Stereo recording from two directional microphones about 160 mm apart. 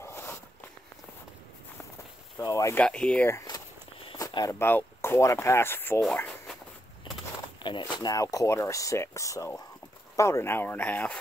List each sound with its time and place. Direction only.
0.0 s a sound: 15° left (ahead or behind)
2.4 s speech: 20° left (ahead or behind)
2.8 s speech: 5° left (ahead or behind)
3.3 s walk: 20° left (ahead or behind)
4.2 s speech: 20° left (ahead or behind)
7.6 s speech: 30° left (ahead or behind); by 11.1 s 10° left (ahead or behind)